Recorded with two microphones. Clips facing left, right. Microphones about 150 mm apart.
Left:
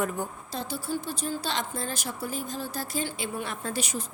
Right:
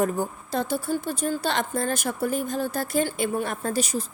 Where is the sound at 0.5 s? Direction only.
55° right (ahead or behind).